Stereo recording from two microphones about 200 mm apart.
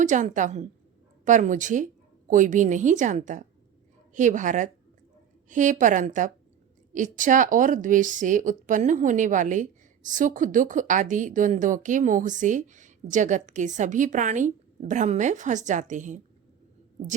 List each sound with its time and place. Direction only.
0.0 s a woman's voice: 40° right (ahead or behind)